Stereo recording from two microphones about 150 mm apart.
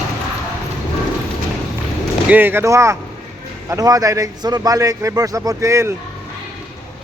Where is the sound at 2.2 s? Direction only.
15° right (ahead or behind).